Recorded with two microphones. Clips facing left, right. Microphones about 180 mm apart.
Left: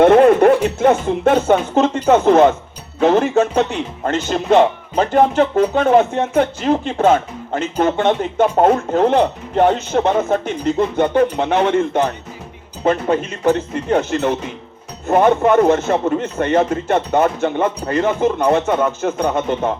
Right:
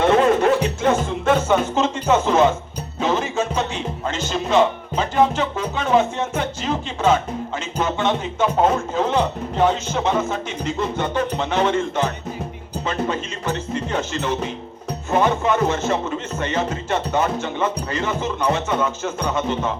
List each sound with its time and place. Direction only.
0.0 s a man's voice: 55° left (ahead or behind)